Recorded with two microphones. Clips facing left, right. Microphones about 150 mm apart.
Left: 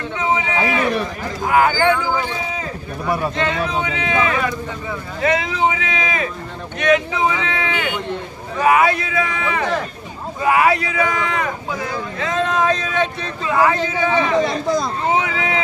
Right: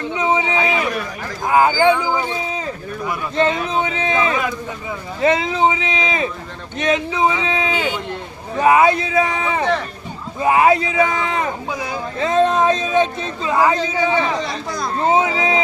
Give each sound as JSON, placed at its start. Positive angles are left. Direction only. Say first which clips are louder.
{"t": 0.2, "sound": "a sound", "louder": "right 1 dB", "side_deg": -20}
{"t": 1.5, "sound": "speech", "louder": "right 2 dB", "side_deg": -20}
{"t": 3.3, "sound": "speech", "louder": "right 3 dB", "side_deg": -30}
{"t": 15.0, "sound": "speech", "louder": "right 3 dB", "side_deg": -25}